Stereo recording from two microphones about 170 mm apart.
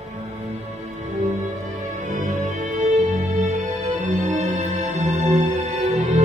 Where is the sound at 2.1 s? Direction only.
45° right (ahead or behind).